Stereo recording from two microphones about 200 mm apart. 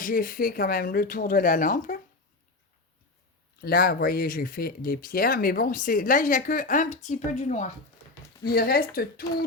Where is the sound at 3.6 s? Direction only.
50° left (ahead or behind).